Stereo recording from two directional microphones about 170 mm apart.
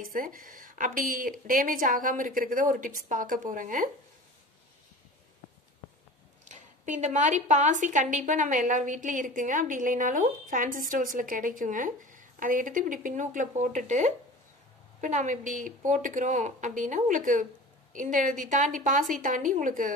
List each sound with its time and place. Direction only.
0.0 s a woman's voice: 55° right (ahead or behind)
6.5 s a woman's voice: 45° right (ahead or behind)